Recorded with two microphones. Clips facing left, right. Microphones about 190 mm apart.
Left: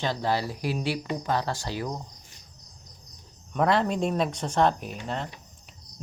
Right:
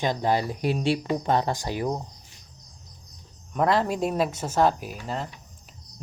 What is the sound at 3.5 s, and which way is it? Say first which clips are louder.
Speech: right 1 dB; centre (ahead or behind).